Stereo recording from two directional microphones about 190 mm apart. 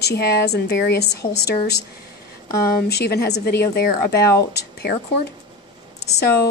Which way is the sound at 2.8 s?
55° left (ahead or behind).